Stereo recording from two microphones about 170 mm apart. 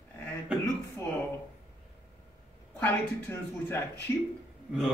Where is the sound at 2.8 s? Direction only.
15° left (ahead or behind).